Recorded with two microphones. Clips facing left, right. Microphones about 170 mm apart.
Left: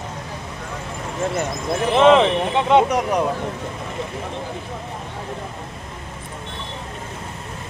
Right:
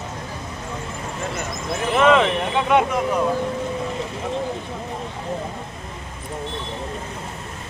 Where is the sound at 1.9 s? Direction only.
25° left (ahead or behind).